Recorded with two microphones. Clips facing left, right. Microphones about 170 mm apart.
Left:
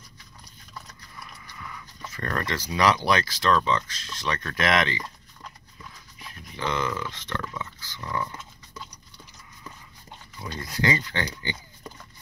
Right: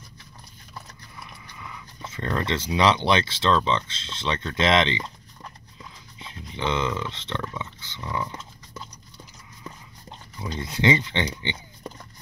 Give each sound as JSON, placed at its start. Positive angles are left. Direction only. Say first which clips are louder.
{"t": 2.0, "sound": "speech", "louder": "right 3 dB", "side_deg": -25}
{"t": 6.1, "sound": "speech", "louder": "right 3 dB", "side_deg": -20}
{"t": 10.5, "sound": "speech", "louder": "right 4 dB", "side_deg": -25}